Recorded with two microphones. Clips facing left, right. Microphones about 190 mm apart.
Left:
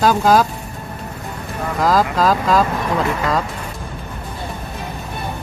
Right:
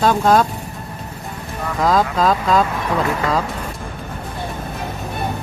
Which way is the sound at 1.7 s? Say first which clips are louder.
Even; centre (ahead or behind).